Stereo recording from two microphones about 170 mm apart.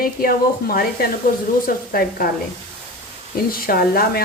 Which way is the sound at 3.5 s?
60° left (ahead or behind).